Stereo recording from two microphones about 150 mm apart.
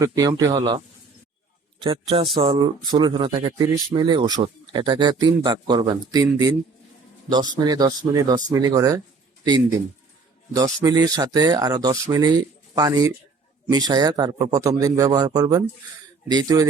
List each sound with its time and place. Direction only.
0.0 s speech: 20° right (ahead or behind)
1.8 s a man's voice: 35° right (ahead or behind)